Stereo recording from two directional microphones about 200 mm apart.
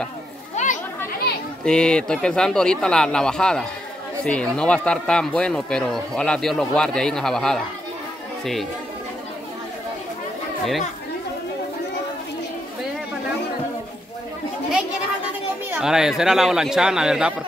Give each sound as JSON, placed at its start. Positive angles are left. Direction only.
{"t": 0.6, "sound": "children playing", "side_deg": 35}
{"t": 1.6, "sound": "speech", "side_deg": 5}
{"t": 15.7, "sound": "speech", "side_deg": -5}